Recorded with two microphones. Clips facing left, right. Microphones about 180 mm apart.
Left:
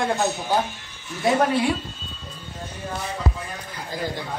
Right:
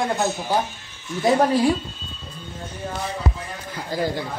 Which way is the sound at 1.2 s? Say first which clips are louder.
Right 2 dB; 35° right (ahead or behind).